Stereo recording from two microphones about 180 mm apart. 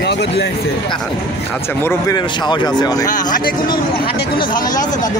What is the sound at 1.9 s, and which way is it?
Speech, 20° left (ahead or behind).